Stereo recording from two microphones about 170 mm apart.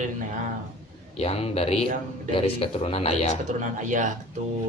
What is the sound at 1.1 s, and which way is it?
Speech, 35° left (ahead or behind).